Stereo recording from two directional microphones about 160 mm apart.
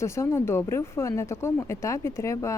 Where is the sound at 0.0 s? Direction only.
15° left (ahead or behind).